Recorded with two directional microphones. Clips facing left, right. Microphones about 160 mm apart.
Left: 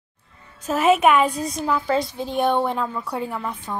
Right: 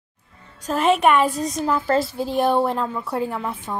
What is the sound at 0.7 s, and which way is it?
A woman's voice, 5° left (ahead or behind).